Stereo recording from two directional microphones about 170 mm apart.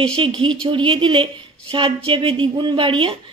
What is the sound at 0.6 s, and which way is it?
Speech, 30° right (ahead or behind).